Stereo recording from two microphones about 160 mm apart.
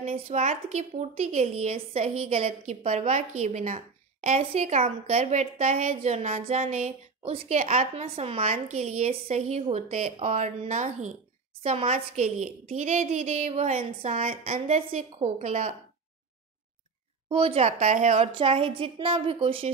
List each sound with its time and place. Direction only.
0.1 s a woman's voice: 45° right (ahead or behind)
17.3 s a woman's voice: 35° right (ahead or behind)